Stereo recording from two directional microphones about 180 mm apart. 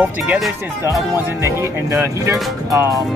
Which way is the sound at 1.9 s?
15° right (ahead or behind).